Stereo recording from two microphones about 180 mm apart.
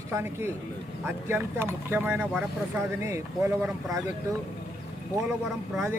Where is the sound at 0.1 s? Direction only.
15° right (ahead or behind).